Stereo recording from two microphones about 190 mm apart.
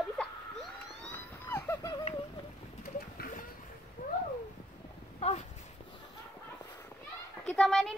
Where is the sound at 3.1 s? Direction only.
45° left (ahead or behind).